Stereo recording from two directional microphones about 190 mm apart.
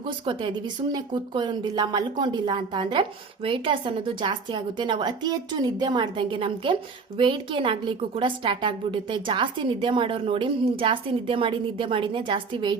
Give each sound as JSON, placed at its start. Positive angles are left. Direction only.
{"t": 0.0, "sound": "speech", "side_deg": -25}